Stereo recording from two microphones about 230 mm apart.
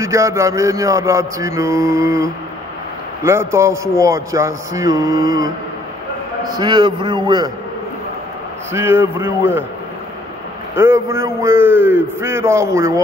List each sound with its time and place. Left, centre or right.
0.0 s mantra: centre
6.6 s a man's voice: centre
8.7 s mantra: centre
10.8 s mantra: centre